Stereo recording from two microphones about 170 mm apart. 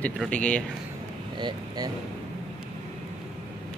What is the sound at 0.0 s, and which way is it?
Speech, 10° left (ahead or behind).